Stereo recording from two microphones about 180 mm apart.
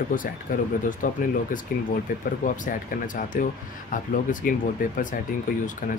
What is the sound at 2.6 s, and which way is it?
Speech, 45° left (ahead or behind).